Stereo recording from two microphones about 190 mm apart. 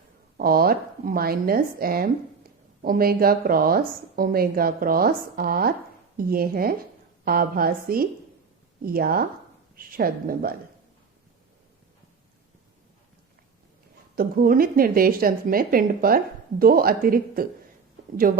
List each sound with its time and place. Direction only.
0.3 s a woman's voice: 50° right (ahead or behind)
14.2 s a woman's voice: 50° right (ahead or behind)